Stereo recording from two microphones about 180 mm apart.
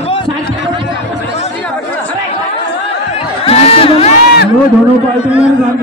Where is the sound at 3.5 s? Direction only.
35° left (ahead or behind).